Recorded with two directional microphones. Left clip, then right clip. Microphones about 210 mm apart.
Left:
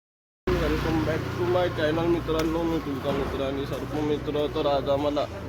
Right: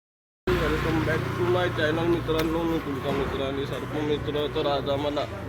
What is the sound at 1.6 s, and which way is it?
Speech, centre (ahead or behind).